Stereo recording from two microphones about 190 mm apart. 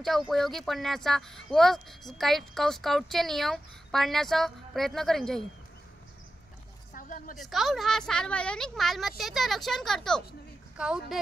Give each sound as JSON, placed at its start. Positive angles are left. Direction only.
{"t": 0.0, "sound": "speech", "side_deg": 0}
{"t": 6.9, "sound": "a sound", "side_deg": 45}
{"t": 7.3, "sound": "speech", "side_deg": 0}